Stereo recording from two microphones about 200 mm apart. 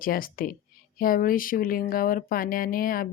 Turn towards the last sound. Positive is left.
turn(degrees=45)  # may be behind; listen again after turning